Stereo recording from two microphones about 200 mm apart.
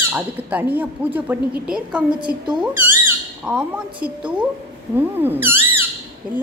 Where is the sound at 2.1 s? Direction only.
25° right (ahead or behind).